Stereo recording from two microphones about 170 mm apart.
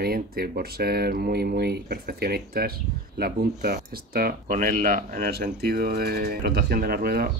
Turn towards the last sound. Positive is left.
turn(degrees=-65)  # may be behind; listen again after turning